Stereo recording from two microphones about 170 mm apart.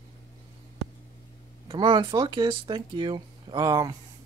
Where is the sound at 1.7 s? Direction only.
30° right (ahead or behind).